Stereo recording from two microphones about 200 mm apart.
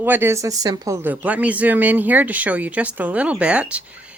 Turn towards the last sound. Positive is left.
turn(degrees=-5)  # may be behind; listen again after turning